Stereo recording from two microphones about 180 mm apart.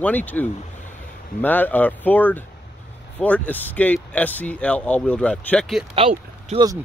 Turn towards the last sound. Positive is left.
turn(degrees=-30)  # may be behind; listen again after turning